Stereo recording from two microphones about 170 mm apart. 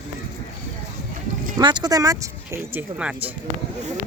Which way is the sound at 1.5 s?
25° right (ahead or behind).